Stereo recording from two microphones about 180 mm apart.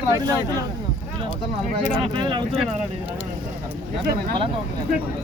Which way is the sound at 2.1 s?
25° right (ahead or behind).